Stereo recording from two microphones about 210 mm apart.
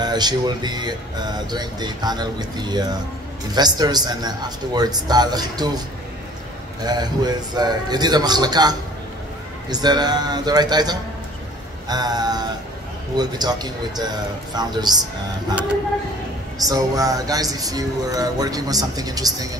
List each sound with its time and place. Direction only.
0.0 s speech: 20° right (ahead or behind)
6.8 s speech: 20° right (ahead or behind)
16.6 s speech: 15° right (ahead or behind)